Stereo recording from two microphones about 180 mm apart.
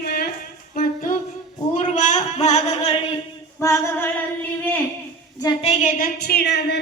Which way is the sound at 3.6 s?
15° left (ahead or behind).